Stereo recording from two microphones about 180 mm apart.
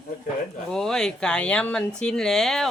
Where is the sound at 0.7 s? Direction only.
5° left (ahead or behind).